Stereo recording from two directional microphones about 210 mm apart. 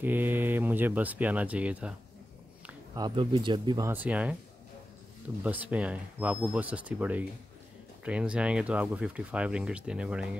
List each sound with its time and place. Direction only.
0.0 s speech: 10° right (ahead or behind)
3.0 s speech: 25° right (ahead or behind); by 4.4 s 5° right (ahead or behind)
5.4 s speech: 5° right (ahead or behind)